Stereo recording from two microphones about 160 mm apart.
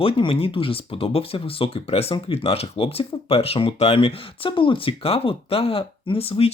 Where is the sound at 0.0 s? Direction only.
35° left (ahead or behind).